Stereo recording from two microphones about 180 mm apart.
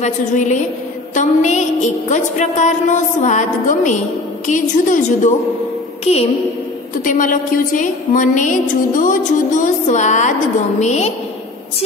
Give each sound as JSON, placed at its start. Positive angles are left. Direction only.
{"t": 0.0, "sound": "music", "side_deg": 40}
{"t": 4.5, "sound": "a woman's voice", "side_deg": 45}
{"t": 6.1, "sound": "music", "side_deg": 40}
{"t": 7.1, "sound": "a woman's voice", "side_deg": 45}
{"t": 10.8, "sound": "music", "side_deg": 40}